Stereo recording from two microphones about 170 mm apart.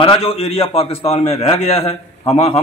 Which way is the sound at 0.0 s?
35° left (ahead or behind).